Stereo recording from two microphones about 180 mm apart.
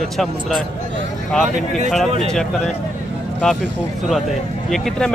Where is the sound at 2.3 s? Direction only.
5° left (ahead or behind).